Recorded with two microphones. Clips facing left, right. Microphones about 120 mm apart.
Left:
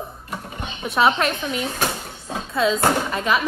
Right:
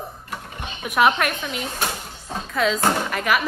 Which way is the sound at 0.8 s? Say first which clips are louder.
Even; 25° left (ahead or behind).